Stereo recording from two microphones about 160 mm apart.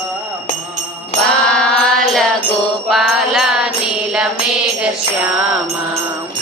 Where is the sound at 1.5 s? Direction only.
5° left (ahead or behind).